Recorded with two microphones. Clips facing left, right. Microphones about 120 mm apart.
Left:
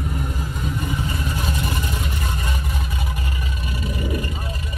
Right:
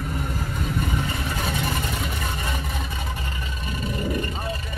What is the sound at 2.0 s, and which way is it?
Vehicle, centre (ahead or behind).